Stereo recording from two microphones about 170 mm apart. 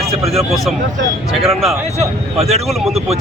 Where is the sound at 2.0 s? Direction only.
40° right (ahead or behind).